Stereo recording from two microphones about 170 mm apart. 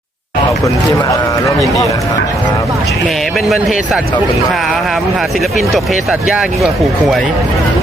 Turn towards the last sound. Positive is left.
turn(degrees=0)  # may be behind; listen again after turning